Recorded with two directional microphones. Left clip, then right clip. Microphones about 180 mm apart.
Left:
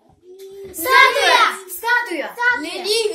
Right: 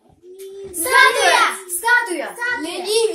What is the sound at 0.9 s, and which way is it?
A child's voice, 55° left (ahead or behind).